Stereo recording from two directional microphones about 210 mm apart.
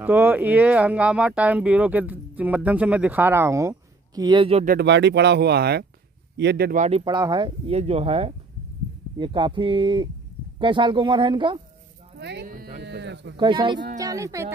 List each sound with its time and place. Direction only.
0.0 s speech: 10° right (ahead or behind); by 4.6 s 25° right (ahead or behind)
4.6 s speech: 55° right (ahead or behind)
7.1 s speech: 20° right (ahead or behind)
12.2 s speech: 55° right (ahead or behind)
13.4 s speech: 25° right (ahead or behind)